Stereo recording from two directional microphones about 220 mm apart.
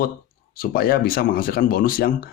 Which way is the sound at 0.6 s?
40° left (ahead or behind).